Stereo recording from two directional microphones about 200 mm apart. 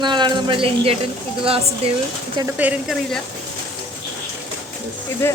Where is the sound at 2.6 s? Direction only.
10° right (ahead or behind).